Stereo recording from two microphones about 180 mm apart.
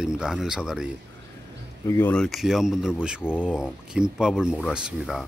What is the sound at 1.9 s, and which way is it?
Speech, 10° left (ahead or behind).